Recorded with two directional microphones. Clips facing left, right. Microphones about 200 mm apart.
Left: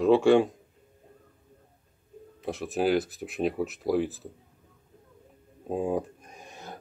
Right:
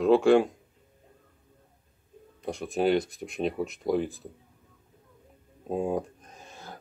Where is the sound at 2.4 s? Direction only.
Centre (ahead or behind).